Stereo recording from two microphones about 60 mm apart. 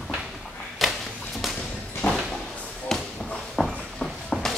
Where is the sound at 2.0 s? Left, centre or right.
Left.